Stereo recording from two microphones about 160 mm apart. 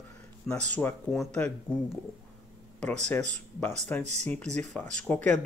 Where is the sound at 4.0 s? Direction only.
45° right (ahead or behind).